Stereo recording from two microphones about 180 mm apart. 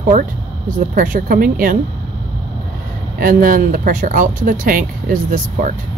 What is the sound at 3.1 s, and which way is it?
Speech, 50° right (ahead or behind).